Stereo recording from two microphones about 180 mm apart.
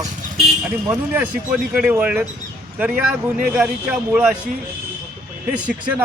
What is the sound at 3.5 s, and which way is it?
Speech, 5° right (ahead or behind).